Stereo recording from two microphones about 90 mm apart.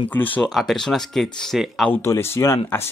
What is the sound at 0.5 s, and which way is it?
Speech, 5° left (ahead or behind).